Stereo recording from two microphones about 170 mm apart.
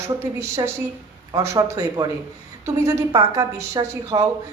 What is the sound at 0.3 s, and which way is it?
A woman's voice, 15° right (ahead or behind).